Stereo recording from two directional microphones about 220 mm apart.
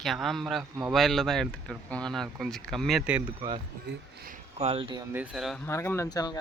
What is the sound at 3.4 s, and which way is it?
Speech, 25° right (ahead or behind).